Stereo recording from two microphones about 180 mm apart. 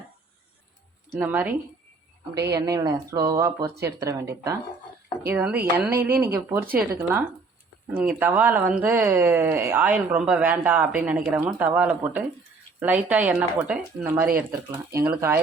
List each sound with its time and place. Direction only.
1.2 s speech: 10° right (ahead or behind)
7.9 s speech: 10° right (ahead or behind)